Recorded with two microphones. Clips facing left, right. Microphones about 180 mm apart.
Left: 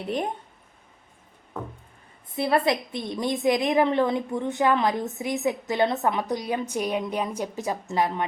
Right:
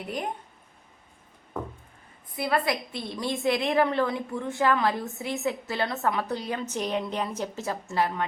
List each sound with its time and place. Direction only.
2.3 s a woman's voice: 25° left (ahead or behind)